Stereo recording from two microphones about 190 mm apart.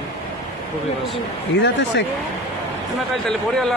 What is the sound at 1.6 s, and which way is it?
Speech, 70° left (ahead or behind).